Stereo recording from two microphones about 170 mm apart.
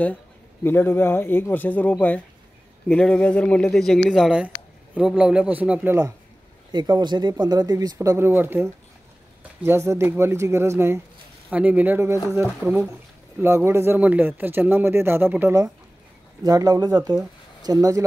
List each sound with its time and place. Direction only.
0.7 s speech: 15° left (ahead or behind); by 6.1 s 15° right (ahead or behind)
6.7 s speech: 25° right (ahead or behind)